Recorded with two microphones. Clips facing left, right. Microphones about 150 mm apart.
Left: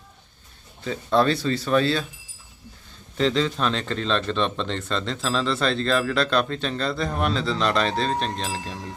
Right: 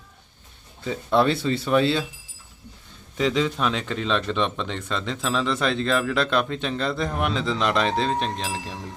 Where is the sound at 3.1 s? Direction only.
10° right (ahead or behind).